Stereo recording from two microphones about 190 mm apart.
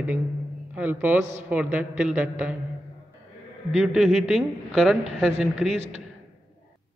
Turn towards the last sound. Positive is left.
turn(degrees=0)  # may be behind; listen again after turning